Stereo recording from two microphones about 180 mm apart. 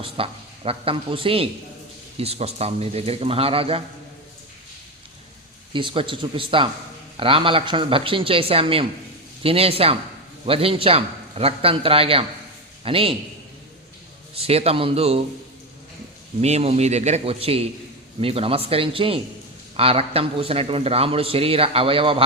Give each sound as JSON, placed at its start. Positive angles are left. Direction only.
{"t": 0.0, "sound": "a man's voice", "side_deg": -30}
{"t": 5.7, "sound": "a woman's voice", "side_deg": -30}
{"t": 14.3, "sound": "a man's voice", "side_deg": -35}
{"t": 16.4, "sound": "a man's voice", "side_deg": -35}